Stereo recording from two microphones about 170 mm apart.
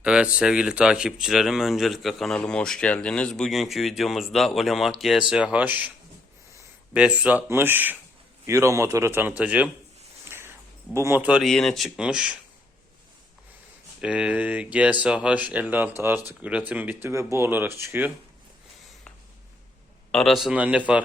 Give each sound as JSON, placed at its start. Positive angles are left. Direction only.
{"t": 0.0, "sound": "speech", "side_deg": -5}
{"t": 6.9, "sound": "speech", "side_deg": -5}
{"t": 10.2, "sound": "a sound", "side_deg": -15}
{"t": 10.9, "sound": "speech", "side_deg": -15}
{"t": 14.0, "sound": "speech", "side_deg": -5}
{"t": 20.1, "sound": "speech", "side_deg": 0}